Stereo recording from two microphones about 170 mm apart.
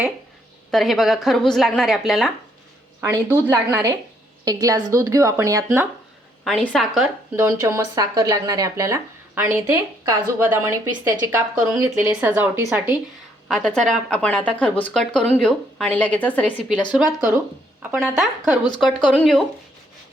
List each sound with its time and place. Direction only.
0.7 s a woman's voice: centre (ahead or behind)
3.0 s speech: 15° right (ahead or behind)
6.4 s a woman's voice: centre (ahead or behind)
7.3 s speech: 15° right (ahead or behind)
13.5 s speech: 5° left (ahead or behind)
17.2 s speech: 15° right (ahead or behind)
18.0 s a woman's voice: centre (ahead or behind)
18.9 s a woman's voice: 5° left (ahead or behind)